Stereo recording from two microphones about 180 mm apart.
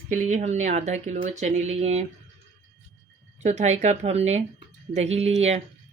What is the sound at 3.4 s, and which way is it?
Speech, 40° right (ahead or behind).